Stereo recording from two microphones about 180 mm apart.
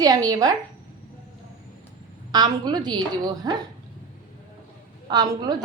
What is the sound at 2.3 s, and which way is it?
A woman's voice, 25° right (ahead or behind).